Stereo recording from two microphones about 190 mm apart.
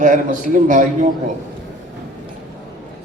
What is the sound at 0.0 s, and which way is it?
Speech, 45° right (ahead or behind).